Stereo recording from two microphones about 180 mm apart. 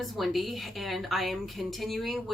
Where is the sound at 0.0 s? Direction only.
Centre (ahead or behind).